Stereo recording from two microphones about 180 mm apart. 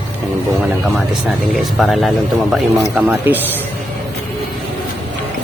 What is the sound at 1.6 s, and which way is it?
Speech, centre (ahead or behind).